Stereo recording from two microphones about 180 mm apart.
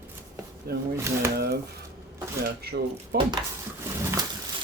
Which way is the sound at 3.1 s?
65° right (ahead or behind).